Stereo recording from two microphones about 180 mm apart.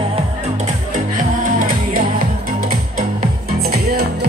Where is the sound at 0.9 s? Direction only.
45° right (ahead or behind).